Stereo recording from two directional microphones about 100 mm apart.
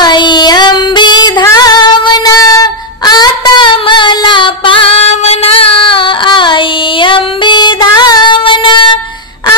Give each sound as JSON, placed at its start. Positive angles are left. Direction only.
{"t": 0.0, "sound": "child singing", "side_deg": 50}
{"t": 1.4, "sound": "female singing", "side_deg": 40}